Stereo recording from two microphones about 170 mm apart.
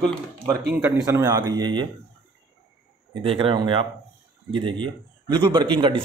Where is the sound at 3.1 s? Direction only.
30° right (ahead or behind).